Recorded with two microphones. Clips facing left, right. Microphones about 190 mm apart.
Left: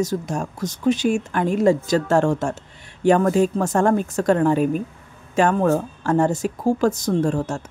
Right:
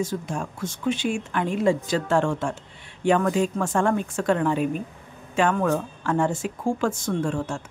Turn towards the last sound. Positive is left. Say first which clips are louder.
# left 5 dB
turn(degrees=40)  # may be behind; listen again after turning